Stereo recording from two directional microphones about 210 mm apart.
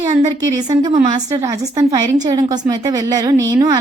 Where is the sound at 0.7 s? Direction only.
20° right (ahead or behind).